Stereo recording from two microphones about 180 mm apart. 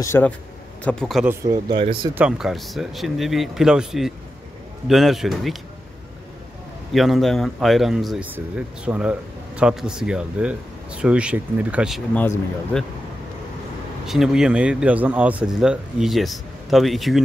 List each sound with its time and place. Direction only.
0.0 s speech: 15° left (ahead or behind)
0.8 s speech: 5° left (ahead or behind)
1.2 s speech: 15° right (ahead or behind)
2.1 s speech: 5° right (ahead or behind)
6.9 s speech: centre (ahead or behind)
12.1 s speech: 10° left (ahead or behind)
14.0 s speech: centre (ahead or behind)